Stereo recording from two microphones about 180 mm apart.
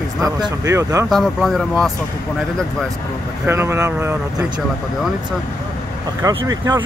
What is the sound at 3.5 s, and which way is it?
Speech, 15° right (ahead or behind).